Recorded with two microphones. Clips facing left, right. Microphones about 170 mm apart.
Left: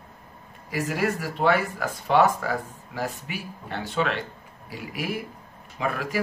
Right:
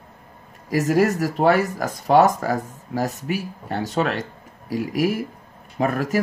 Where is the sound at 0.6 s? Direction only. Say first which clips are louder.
Right 8 dB; 40° right (ahead or behind).